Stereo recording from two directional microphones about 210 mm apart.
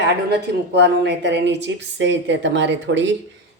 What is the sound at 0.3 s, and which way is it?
Speech, 55° right (ahead or behind).